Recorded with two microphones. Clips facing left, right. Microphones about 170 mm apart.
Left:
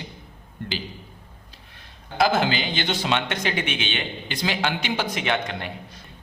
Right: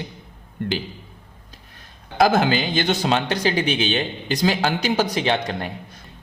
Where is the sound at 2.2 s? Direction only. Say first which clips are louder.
Right 4 dB; 45° right (ahead or behind).